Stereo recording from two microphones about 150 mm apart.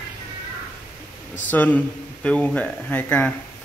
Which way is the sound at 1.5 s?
10° left (ahead or behind).